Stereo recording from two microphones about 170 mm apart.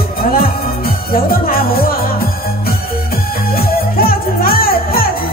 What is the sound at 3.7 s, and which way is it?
Music, 60° left (ahead or behind).